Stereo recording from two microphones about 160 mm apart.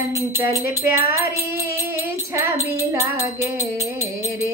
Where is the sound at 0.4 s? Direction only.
15° right (ahead or behind).